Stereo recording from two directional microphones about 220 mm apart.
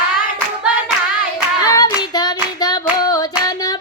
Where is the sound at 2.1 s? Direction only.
20° left (ahead or behind).